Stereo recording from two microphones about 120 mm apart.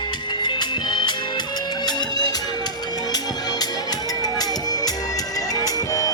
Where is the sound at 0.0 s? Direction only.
40° left (ahead or behind).